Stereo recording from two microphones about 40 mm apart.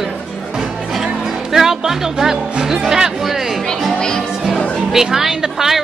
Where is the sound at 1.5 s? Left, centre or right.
Centre.